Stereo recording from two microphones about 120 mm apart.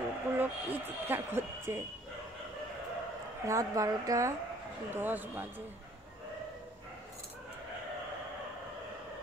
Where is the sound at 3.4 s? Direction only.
25° right (ahead or behind).